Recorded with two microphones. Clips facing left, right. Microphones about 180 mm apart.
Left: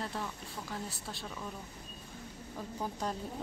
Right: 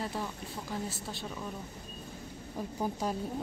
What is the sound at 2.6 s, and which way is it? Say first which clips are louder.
Speech: right 5 dB; 10° right (ahead or behind).